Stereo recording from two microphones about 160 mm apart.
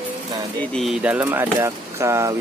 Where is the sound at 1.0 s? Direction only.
10° right (ahead or behind).